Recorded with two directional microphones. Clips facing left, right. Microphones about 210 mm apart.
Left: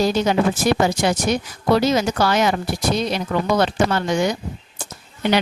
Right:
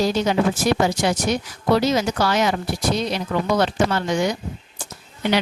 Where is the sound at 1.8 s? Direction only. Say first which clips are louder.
Left 2 dB; 50° left (ahead or behind).